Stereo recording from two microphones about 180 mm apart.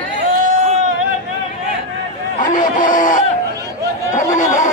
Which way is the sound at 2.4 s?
45° left (ahead or behind).